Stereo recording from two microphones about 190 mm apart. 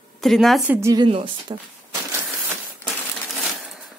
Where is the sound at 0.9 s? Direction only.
25° right (ahead or behind).